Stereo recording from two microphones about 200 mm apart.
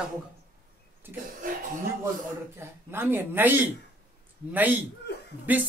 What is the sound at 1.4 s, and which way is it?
Music, 45° right (ahead or behind).